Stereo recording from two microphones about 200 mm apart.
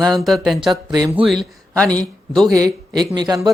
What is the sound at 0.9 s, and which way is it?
Speech, 20° right (ahead or behind).